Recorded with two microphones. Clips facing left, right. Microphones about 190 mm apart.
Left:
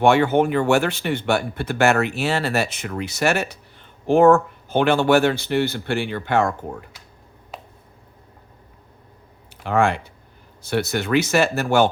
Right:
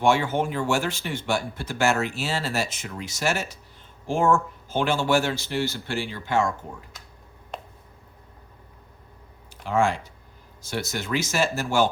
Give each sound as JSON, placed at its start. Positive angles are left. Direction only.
{"t": 0.0, "sound": "speech", "side_deg": 60}
{"t": 7.5, "sound": "a sound", "side_deg": 5}
{"t": 9.6, "sound": "speech", "side_deg": 60}